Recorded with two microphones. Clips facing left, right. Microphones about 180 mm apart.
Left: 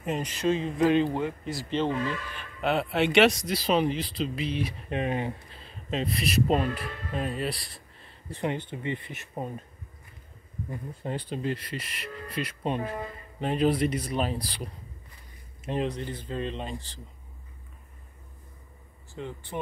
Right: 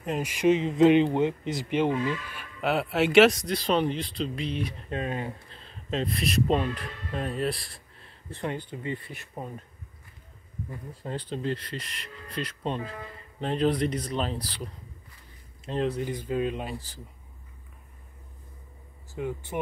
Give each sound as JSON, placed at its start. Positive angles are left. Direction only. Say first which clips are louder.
{"t": 0.2, "sound": "speech", "louder": "right 6 dB", "side_deg": -15}
{"t": 4.8, "sound": "speech", "louder": "left 2 dB", "side_deg": 15}
{"t": 5.6, "sound": "speech", "louder": "right 1 dB", "side_deg": 5}
{"t": 8.3, "sound": "speech", "louder": "left 2 dB", "side_deg": 15}
{"t": 10.7, "sound": "speech", "louder": "left 2 dB", "side_deg": 20}
{"t": 15.8, "sound": "speech", "louder": "right 6 dB", "side_deg": -10}
{"t": 19.1, "sound": "speech", "louder": "right 4 dB", "side_deg": -10}